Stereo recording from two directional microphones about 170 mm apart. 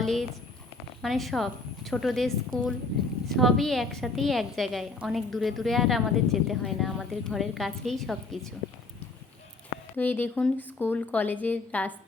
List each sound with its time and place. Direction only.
0.0 s a woman's voice: centre (ahead or behind)
2.5 s a woman's voice: 55° right (ahead or behind)
3.2 s a woman's voice: centre (ahead or behind)
10.0 s a woman's voice: 10° left (ahead or behind)